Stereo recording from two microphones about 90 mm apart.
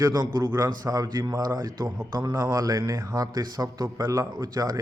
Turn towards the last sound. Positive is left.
turn(degrees=-45)  # may be behind; listen again after turning